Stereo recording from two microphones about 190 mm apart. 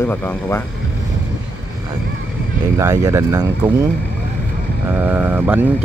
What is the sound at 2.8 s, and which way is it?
Speech, 15° right (ahead or behind).